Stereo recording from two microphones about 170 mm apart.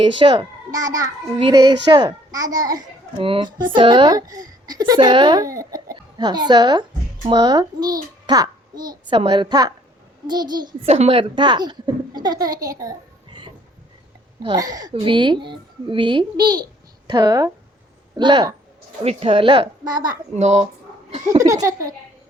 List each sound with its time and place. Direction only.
0.2 s a child's voice: 25° right (ahead or behind)
10.8 s a child's voice: 40° right (ahead or behind); by 12.9 s 20° right (ahead or behind)
14.4 s a child's voice: 25° right (ahead or behind)
20.3 s a woman's voice: 40° right (ahead or behind)
21.5 s a child's voice: 20° right (ahead or behind)